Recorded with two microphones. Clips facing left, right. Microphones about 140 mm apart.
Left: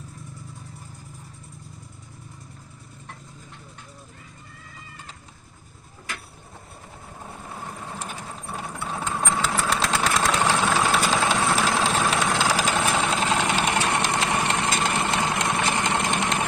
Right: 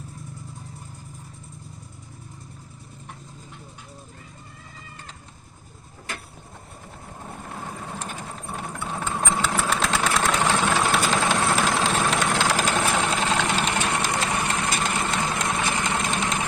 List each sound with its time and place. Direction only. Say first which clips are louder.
8.5 s a sound: even; centre (ahead or behind)
9.2 s engine: even; centre (ahead or behind)
10.4 s vehicle: even; 10° left (ahead or behind)